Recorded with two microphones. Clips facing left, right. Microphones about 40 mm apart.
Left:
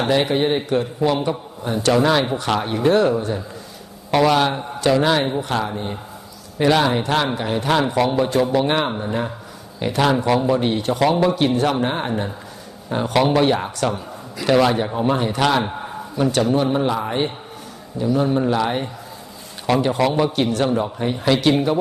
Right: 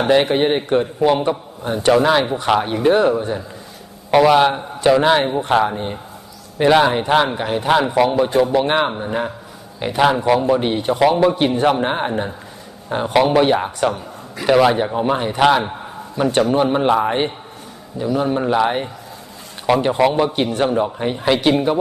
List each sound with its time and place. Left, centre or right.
0.3 s a man's voice: right
2.0 s a man's voice: centre
11.3 s a man's voice: right
16.3 s a man's voice: right
18.0 s a man's voice: centre